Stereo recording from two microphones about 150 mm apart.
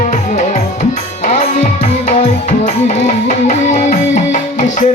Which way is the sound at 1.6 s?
70° left (ahead or behind).